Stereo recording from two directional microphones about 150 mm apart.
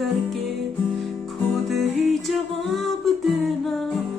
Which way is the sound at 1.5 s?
Centre (ahead or behind).